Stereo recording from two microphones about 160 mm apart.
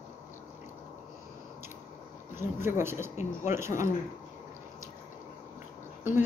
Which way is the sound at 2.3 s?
15° right (ahead or behind).